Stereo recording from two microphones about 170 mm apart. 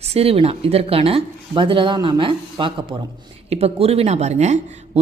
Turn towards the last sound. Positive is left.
turn(degrees=-40)  # may be behind; listen again after turning